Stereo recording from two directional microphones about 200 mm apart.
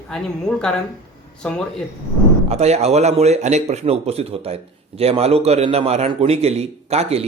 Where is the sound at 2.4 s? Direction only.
30° right (ahead or behind).